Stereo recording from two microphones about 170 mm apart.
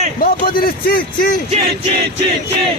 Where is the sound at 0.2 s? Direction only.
60° left (ahead or behind).